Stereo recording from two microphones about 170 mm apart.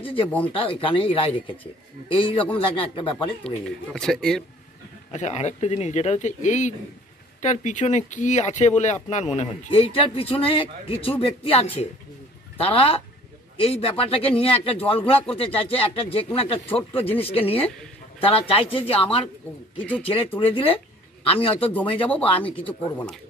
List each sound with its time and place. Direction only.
0.5 s speech: 30° left (ahead or behind)
3.4 s speech: 5° left (ahead or behind)
5.1 s speech: 40° left (ahead or behind)